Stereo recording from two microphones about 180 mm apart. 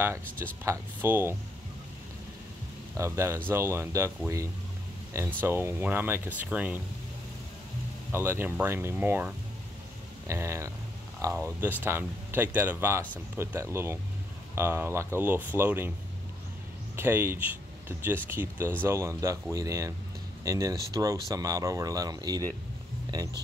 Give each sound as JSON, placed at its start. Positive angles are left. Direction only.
{"t": 0.0, "sound": "speech", "side_deg": -15}
{"t": 3.0, "sound": "speech", "side_deg": -15}
{"t": 5.1, "sound": "speech", "side_deg": -15}
{"t": 8.1, "sound": "speech", "side_deg": -10}
{"t": 16.9, "sound": "speech", "side_deg": -10}